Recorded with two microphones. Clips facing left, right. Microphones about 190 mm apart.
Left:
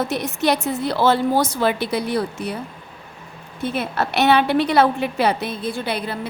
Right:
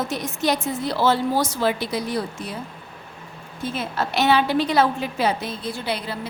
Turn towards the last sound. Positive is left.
turn(degrees=55)  # may be behind; listen again after turning